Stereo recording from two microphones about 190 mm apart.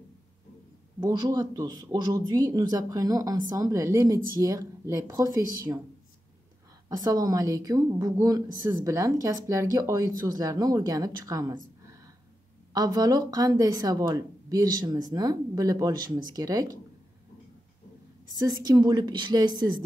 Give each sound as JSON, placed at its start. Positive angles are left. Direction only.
{"t": 1.0, "sound": "a woman's voice", "side_deg": -20}
{"t": 7.0, "sound": "a woman's voice", "side_deg": -20}
{"t": 18.3, "sound": "a woman's voice", "side_deg": -20}